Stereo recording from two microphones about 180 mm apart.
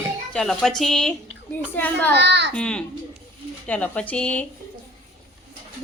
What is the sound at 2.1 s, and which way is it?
Speech, 70° right (ahead or behind).